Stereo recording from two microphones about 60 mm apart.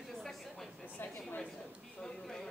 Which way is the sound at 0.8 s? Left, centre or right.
Left.